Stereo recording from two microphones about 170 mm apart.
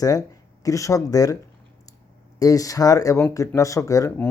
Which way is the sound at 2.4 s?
20° left (ahead or behind).